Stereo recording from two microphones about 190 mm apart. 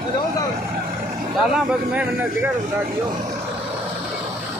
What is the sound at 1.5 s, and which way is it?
Speech, 5° right (ahead or behind).